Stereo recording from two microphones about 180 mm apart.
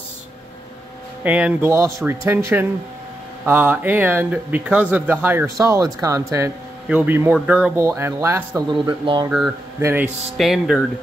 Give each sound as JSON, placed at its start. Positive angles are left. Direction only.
{"t": 1.2, "sound": "speech", "side_deg": -10}
{"t": 8.8, "sound": "speech", "side_deg": -25}
{"t": 9.8, "sound": "speech", "side_deg": -15}
{"t": 10.3, "sound": "speech", "side_deg": 0}